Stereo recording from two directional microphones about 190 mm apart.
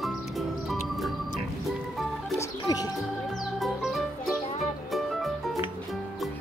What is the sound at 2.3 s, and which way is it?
Music, 20° left (ahead or behind).